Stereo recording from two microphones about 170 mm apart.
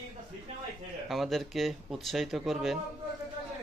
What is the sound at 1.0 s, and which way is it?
Speech, centre (ahead or behind).